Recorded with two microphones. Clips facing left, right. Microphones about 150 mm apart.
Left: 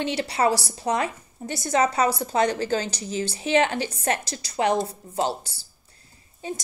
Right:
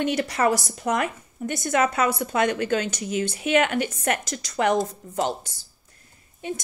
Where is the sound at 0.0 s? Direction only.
50° right (ahead or behind).